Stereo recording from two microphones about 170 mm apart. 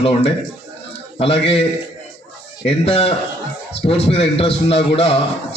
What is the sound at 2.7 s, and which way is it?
A man's voice, 35° left (ahead or behind).